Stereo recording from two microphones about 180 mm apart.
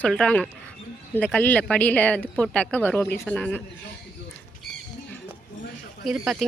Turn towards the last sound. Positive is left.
turn(degrees=0)  # may be behind; listen again after turning